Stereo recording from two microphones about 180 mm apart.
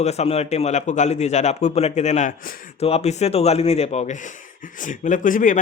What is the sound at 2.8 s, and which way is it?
Speech, 35° left (ahead or behind).